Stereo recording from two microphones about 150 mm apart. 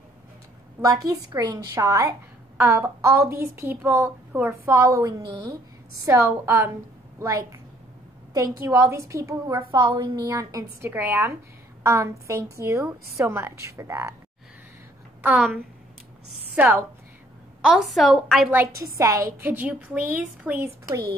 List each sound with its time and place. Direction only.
0.7 s a woman's voice: 20° right (ahead or behind)
15.2 s a woman's voice: 10° right (ahead or behind)
18.9 s a woman's voice: 20° right (ahead or behind)